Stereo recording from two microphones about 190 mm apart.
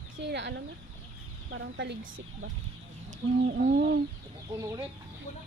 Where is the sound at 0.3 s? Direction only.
65° right (ahead or behind).